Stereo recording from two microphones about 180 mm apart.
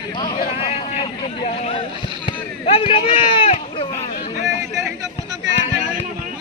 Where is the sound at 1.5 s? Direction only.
35° left (ahead or behind).